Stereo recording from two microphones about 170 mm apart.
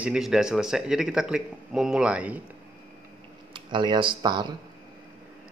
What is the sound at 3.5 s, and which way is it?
Speech, 30° right (ahead or behind).